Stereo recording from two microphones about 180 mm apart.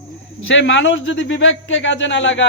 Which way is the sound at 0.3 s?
90° left.